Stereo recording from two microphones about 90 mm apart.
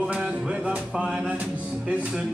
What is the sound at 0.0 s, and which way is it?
Music, 10° right (ahead or behind).